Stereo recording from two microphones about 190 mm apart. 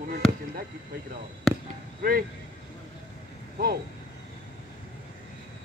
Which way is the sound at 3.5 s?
55° right (ahead or behind).